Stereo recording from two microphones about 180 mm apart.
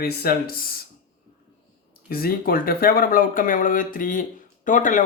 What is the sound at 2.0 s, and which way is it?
Speech, 55° left (ahead or behind).